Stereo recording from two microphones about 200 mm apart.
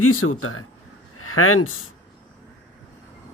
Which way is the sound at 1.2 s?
90° left.